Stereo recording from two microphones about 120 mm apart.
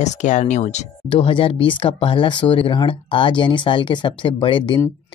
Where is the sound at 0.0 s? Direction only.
80° left.